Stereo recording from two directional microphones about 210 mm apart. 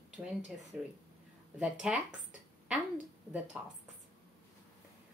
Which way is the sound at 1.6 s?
Centre (ahead or behind).